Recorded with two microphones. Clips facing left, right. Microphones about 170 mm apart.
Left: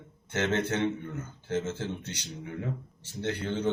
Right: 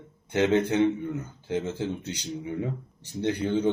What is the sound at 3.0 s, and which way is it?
Speech, 15° right (ahead or behind).